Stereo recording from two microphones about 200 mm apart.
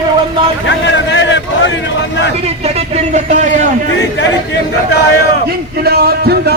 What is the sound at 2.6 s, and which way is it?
Speech, 30° right (ahead or behind).